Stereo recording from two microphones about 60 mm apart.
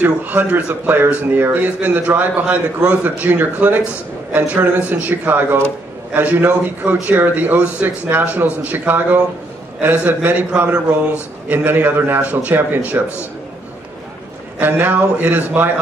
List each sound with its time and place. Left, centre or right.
0.0 s a man's voice: right
14.6 s a man's voice: right